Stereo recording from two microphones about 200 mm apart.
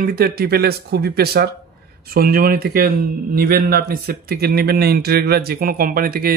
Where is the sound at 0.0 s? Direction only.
50° right (ahead or behind).